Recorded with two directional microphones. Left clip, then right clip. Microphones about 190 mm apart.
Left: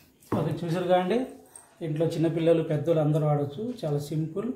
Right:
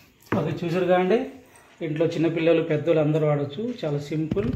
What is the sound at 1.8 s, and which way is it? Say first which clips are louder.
A man's voice: right 4 dB; 15° right (ahead or behind).